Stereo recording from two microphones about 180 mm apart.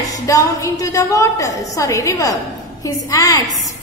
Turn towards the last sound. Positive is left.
turn(degrees=20)  # may be behind; listen again after turning